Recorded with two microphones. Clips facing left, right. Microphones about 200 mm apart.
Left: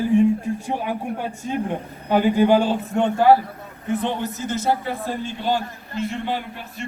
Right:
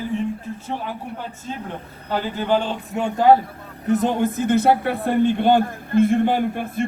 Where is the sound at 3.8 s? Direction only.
40° right (ahead or behind).